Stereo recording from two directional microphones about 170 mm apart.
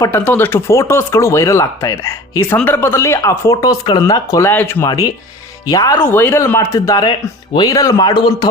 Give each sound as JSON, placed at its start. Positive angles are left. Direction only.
{"t": 0.0, "sound": "a man's voice", "side_deg": 15}